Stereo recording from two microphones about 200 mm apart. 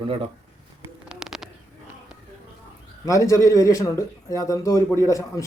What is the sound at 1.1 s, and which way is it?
Bird, centre (ahead or behind).